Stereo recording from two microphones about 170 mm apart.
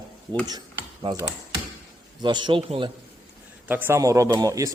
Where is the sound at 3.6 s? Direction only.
10° right (ahead or behind).